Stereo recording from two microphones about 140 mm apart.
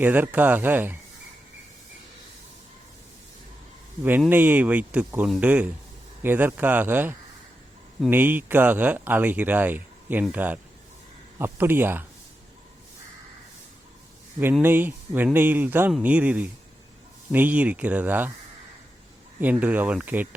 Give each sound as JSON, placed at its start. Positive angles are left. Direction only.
{"t": 0.0, "sound": "speech", "side_deg": -15}
{"t": 4.3, "sound": "speech", "side_deg": -15}
{"t": 14.6, "sound": "speech", "side_deg": -15}
{"t": 19.4, "sound": "speech", "side_deg": -10}